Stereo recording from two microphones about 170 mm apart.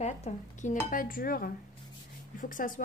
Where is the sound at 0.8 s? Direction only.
55° left (ahead or behind).